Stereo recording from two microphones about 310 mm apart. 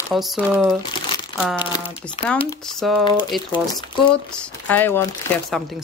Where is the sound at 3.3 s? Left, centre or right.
Centre.